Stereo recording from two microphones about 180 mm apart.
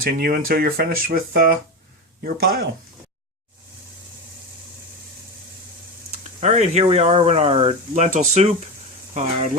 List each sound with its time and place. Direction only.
0.0 s speech: 55° right (ahead or behind)
6.4 s speech: 40° right (ahead or behind)